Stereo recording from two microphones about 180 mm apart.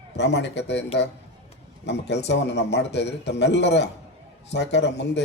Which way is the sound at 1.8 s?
75° left (ahead or behind).